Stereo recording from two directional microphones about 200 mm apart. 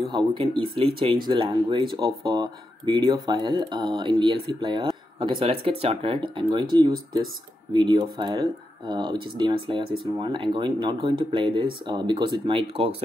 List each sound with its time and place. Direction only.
0.1 s speech: 25° right (ahead or behind)